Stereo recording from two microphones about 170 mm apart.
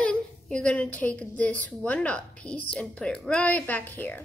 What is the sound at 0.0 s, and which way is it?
A woman's voice, 5° left (ahead or behind).